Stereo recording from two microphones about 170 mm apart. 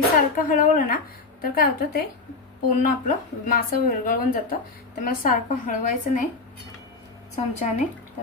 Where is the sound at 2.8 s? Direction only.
50° left (ahead or behind).